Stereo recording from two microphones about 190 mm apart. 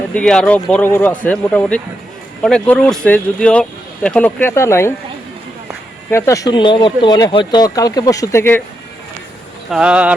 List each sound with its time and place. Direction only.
0.1 s speech: 5° left (ahead or behind)
6.1 s speech: 15° left (ahead or behind)
9.6 s speech: 5° right (ahead or behind)